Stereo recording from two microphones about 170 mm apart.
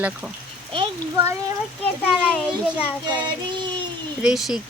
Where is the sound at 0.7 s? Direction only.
30° right (ahead or behind).